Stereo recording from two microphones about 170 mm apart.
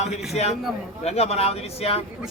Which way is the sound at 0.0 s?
40° left (ahead or behind).